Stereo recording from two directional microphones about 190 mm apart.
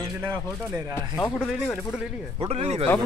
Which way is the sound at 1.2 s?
15° left (ahead or behind).